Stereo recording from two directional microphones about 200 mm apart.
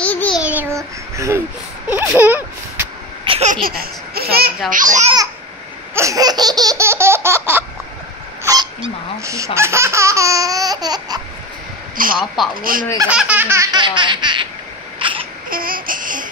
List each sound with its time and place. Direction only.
0.0 s child singing: 10° left (ahead or behind)
0.4 s child singing: 10° right (ahead or behind)
1.9 s a sound: 10° right (ahead or behind)
3.3 s laughter: 30° right (ahead or behind)
3.6 s speech: 45° right (ahead or behind)
5.9 s laughter: 15° right (ahead or behind)
8.5 s speech: 20° right (ahead or behind)
12.0 s speech: 45° right (ahead or behind)
12.4 s speech: centre (ahead or behind)
13.1 s laughter: 5° right (ahead or behind); by 14.5 s 25° right (ahead or behind)
15.0 s crying: 25° right (ahead or behind)
15.5 s a sound: 45° right (ahead or behind)